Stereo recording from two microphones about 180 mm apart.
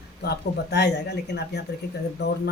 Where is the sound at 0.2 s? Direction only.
65° left (ahead or behind).